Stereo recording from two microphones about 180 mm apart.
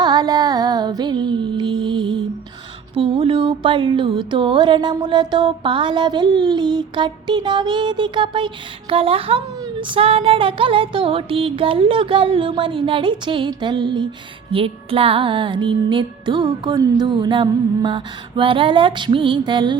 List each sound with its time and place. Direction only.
0.0 s music: 25° right (ahead or behind)